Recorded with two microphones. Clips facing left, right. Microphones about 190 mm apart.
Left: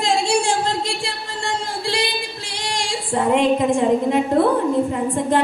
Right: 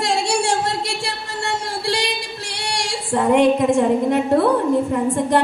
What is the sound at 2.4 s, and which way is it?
Singing, 70° right (ahead or behind).